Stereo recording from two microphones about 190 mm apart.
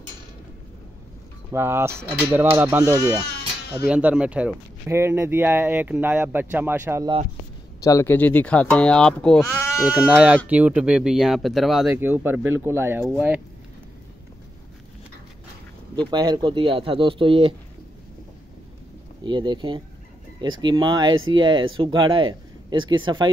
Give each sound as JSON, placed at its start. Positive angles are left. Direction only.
{"t": 1.5, "sound": "speech", "side_deg": -10}
{"t": 3.9, "sound": "speech", "side_deg": -5}
{"t": 7.8, "sound": "speech", "side_deg": 15}
{"t": 9.8, "sound": "speech", "side_deg": -5}
{"t": 16.1, "sound": "speech", "side_deg": -20}
{"t": 19.2, "sound": "speech", "side_deg": -25}